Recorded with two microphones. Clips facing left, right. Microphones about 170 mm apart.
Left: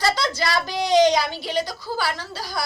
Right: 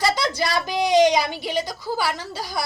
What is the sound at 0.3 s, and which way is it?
Speech, 15° right (ahead or behind).